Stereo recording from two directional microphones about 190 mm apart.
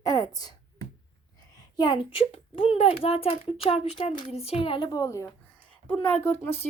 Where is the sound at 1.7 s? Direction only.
25° left (ahead or behind).